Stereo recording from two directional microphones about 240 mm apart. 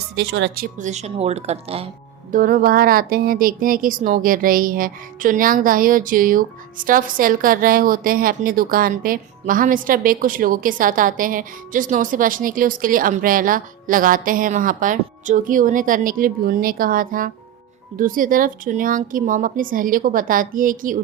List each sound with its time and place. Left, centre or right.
0.2 s speech: right
2.3 s speech: right